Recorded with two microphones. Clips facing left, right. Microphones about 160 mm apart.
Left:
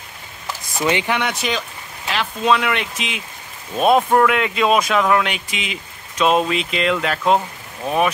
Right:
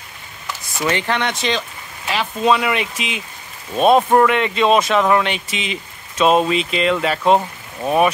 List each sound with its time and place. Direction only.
0.7 s speech: 15° left (ahead or behind); by 8.1 s 5° right (ahead or behind)